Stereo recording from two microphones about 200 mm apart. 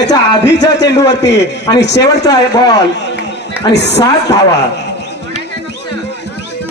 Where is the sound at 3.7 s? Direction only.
60° left (ahead or behind).